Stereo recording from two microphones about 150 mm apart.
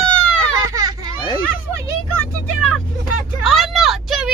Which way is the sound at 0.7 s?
25° right (ahead or behind).